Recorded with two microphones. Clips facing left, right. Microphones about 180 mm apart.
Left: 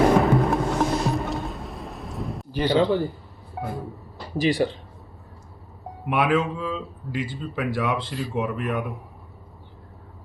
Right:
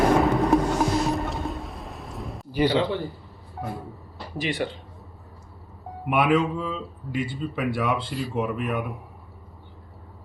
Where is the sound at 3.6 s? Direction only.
65° left (ahead or behind).